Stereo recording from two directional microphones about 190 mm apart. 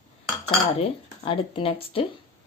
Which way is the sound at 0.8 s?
30° left (ahead or behind).